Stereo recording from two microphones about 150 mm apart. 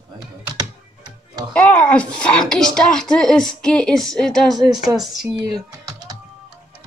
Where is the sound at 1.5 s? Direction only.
10° left (ahead or behind).